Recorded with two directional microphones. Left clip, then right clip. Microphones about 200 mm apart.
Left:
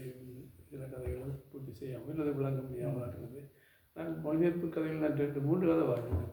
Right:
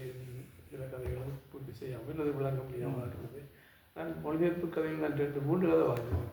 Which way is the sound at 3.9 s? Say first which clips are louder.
Left 1 dB; 45° left (ahead or behind).